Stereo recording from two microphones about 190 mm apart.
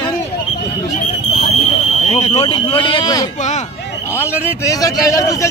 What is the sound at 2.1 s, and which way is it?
A man's voice, 35° left (ahead or behind).